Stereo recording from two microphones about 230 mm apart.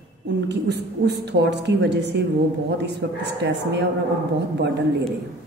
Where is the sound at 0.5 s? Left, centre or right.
Right.